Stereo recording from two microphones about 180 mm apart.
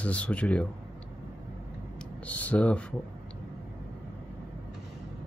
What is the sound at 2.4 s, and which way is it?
Speech, 10° left (ahead or behind).